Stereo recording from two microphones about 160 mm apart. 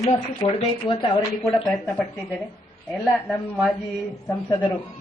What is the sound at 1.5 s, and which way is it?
Speech, centre (ahead or behind).